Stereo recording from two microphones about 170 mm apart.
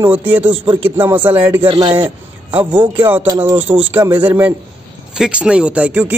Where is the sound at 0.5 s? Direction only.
30° right (ahead or behind).